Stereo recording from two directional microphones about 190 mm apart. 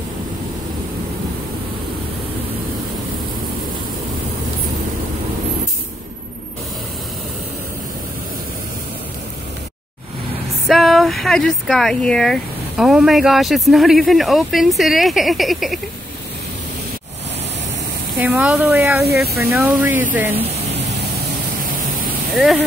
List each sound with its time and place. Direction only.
10.7 s speech: centre (ahead or behind)
18.2 s speech: 5° right (ahead or behind)
22.3 s speech: centre (ahead or behind)